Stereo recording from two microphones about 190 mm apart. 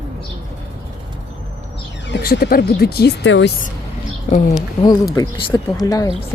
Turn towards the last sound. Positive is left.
turn(degrees=20)  # may be behind; listen again after turning